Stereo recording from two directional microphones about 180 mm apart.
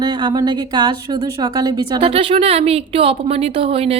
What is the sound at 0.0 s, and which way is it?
A woman's voice, 25° right (ahead or behind).